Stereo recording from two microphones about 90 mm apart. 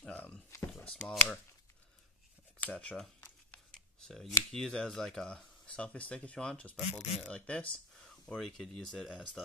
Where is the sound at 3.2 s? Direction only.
10° left (ahead or behind).